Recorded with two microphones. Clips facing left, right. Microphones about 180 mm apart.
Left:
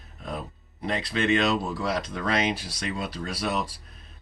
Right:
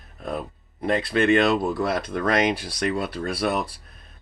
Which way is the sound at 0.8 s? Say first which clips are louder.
Right 6 dB; 50° right (ahead or behind).